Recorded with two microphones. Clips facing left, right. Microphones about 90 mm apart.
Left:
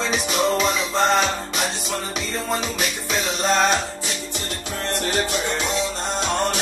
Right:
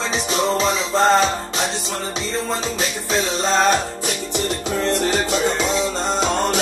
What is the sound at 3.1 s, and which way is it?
Music, 35° right (ahead or behind).